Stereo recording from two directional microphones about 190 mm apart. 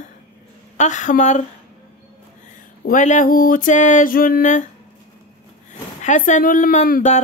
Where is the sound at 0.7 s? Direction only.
40° left (ahead or behind).